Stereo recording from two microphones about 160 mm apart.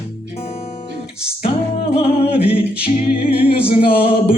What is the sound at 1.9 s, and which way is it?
Music, 40° left (ahead or behind).